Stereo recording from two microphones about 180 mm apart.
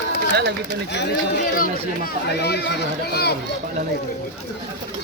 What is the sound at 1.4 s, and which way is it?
Speech, 50° left (ahead or behind).